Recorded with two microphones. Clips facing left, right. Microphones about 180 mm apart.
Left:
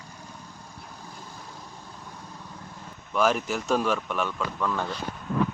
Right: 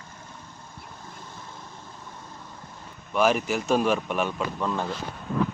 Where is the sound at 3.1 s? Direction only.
5° right (ahead or behind); by 4.8 s 25° right (ahead or behind).